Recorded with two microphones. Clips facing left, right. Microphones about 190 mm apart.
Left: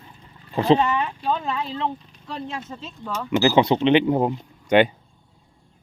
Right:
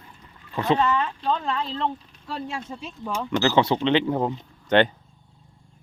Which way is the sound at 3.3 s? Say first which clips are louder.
Left 3 dB; 15° left (ahead or behind).